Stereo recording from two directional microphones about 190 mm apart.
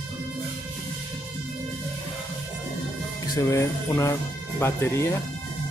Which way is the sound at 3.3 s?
20° left (ahead or behind).